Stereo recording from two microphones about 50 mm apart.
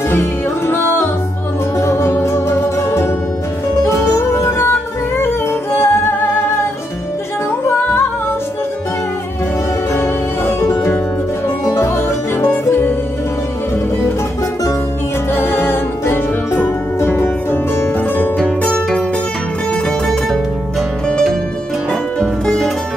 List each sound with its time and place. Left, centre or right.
0.2 s music: left
1.8 s music: left
4.6 s music: left
9.9 s music: left
11.8 s music: left
15.3 s music: left